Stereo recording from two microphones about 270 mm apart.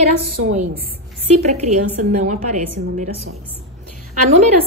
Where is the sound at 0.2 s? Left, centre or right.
Right.